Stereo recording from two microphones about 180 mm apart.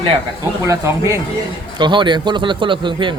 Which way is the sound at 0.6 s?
15° right (ahead or behind).